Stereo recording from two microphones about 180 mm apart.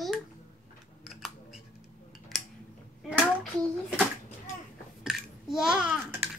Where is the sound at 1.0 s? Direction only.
Centre (ahead or behind).